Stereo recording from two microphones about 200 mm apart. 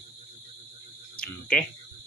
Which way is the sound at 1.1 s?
5° left (ahead or behind).